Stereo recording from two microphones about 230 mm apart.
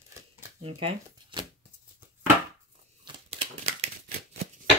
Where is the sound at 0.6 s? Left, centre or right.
Right.